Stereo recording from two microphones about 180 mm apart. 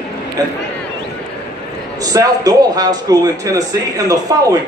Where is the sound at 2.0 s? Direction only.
20° right (ahead or behind).